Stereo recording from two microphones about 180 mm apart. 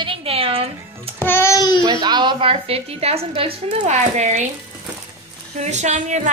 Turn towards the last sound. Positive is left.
turn(degrees=-40)  # may be behind; listen again after turning